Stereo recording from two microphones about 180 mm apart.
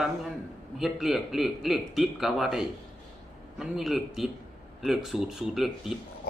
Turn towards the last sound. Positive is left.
turn(degrees=0)  # may be behind; listen again after turning